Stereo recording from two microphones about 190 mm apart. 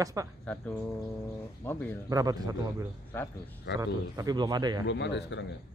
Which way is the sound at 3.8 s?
20° right (ahead or behind).